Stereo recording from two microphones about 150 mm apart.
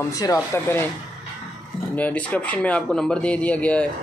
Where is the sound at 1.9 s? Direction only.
10° left (ahead or behind).